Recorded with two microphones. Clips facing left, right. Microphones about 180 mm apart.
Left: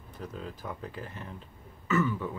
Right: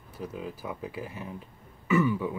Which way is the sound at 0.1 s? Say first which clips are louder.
Right 3 dB; 10° right (ahead or behind).